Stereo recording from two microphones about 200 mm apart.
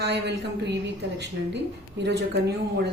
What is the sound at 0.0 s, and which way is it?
Speech, 55° right (ahead or behind).